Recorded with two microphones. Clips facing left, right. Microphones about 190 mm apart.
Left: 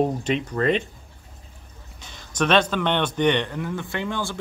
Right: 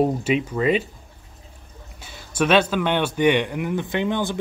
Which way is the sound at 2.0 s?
10° right (ahead or behind).